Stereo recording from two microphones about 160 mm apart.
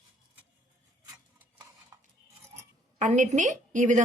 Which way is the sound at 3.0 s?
50° right (ahead or behind).